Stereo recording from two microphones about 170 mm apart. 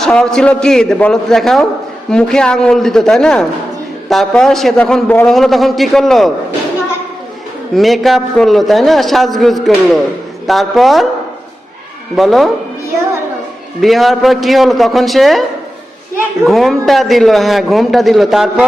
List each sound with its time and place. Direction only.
0.0 s a man's voice: 5° left (ahead or behind)
7.8 s a man's voice: centre (ahead or behind)
12.1 s a man's voice: centre (ahead or behind)
13.8 s a man's voice: centre (ahead or behind)